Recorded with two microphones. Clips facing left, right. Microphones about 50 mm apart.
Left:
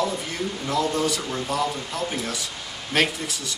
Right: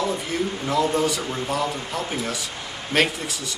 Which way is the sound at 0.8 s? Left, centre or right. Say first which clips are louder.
Right 2 dB; right.